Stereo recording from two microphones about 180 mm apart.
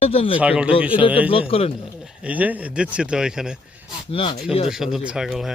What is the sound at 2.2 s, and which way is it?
Speech, 10° right (ahead or behind).